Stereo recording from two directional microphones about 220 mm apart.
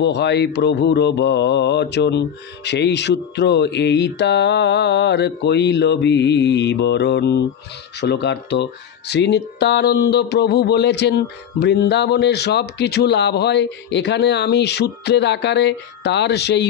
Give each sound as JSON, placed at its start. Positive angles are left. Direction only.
{"t": 0.0, "sound": "speech", "side_deg": 50}